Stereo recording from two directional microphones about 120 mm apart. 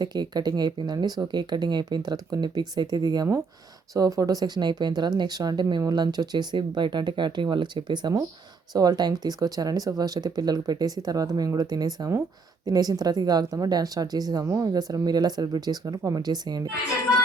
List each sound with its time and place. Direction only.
0.0 s speech: 35° right (ahead or behind)